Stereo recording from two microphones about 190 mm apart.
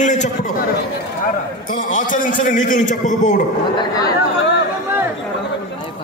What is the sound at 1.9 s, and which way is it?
A man's voice, 45° left (ahead or behind).